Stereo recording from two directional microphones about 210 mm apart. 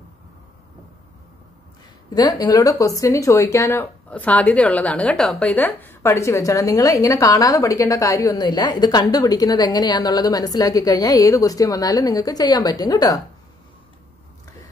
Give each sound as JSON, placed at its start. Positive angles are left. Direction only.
{"t": 2.0, "sound": "speech", "side_deg": 20}